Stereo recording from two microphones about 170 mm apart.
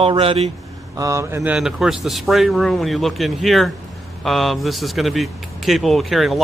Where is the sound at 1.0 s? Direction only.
20° right (ahead or behind).